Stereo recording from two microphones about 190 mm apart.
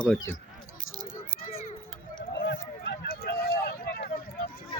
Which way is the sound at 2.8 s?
50° left (ahead or behind).